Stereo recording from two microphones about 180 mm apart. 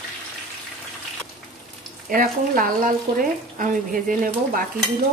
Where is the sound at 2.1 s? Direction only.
50° right (ahead or behind).